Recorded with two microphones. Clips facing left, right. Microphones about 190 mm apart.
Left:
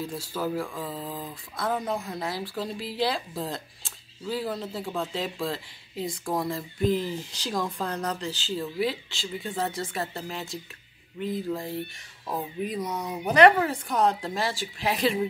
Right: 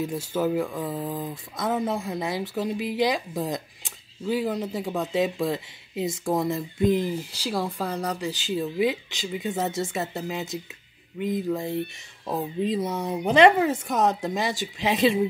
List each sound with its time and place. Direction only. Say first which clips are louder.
0.0 s speech: right 5 dB; 20° right (ahead or behind)